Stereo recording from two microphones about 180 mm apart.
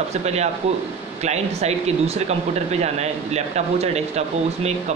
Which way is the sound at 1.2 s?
35° right (ahead or behind).